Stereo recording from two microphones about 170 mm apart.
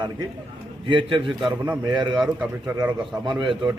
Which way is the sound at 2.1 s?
5° right (ahead or behind).